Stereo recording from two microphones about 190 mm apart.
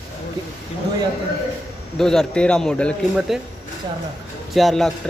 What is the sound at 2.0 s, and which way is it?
Speech, 5° left (ahead or behind).